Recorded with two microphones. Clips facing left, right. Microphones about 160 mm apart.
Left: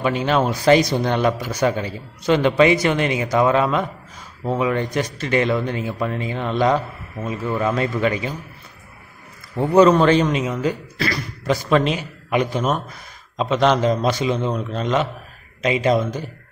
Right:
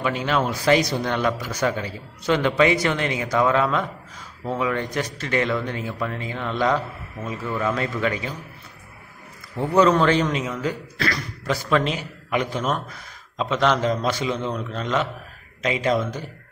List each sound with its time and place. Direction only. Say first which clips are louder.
0.0 s speech: left 4 dB; 25° left (ahead or behind)
9.6 s speech: left 4 dB; 15° left (ahead or behind)